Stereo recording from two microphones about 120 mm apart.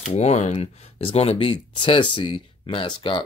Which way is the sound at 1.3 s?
45° left (ahead or behind).